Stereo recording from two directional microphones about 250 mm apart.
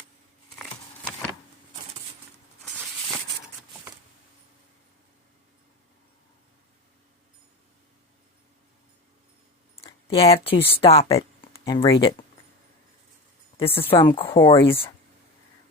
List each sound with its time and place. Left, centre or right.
9.7 s a sound: centre
10.2 s speech: left
13.7 s speech: centre
13.9 s speech: centre